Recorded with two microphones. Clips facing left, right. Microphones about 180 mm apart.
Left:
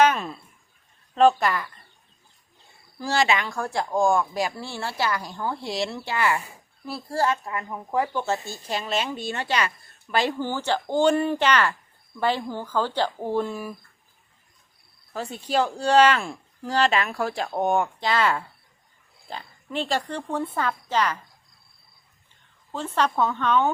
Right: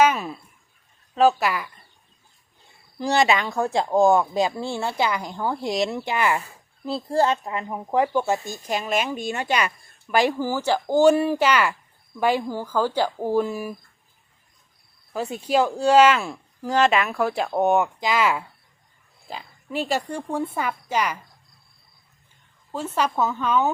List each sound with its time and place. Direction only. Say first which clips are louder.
0.0 s a sound: right 1 dB; 10° right (ahead or behind)
1.1 s speech: even; 5° right (ahead or behind)
3.0 s speech: right 3 dB; 20° right (ahead or behind)
15.1 s speech: right 3 dB; 10° right (ahead or behind)
16.7 s speech: right 3 dB; 35° left (ahead or behind)
17.2 s speech: right 4 dB; 5° right (ahead or behind)
22.7 s speech: even; 10° right (ahead or behind)